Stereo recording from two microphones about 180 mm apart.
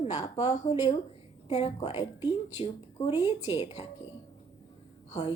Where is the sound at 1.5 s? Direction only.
35° left (ahead or behind).